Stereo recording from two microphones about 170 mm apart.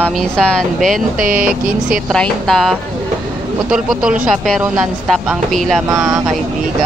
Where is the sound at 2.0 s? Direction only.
5° left (ahead or behind).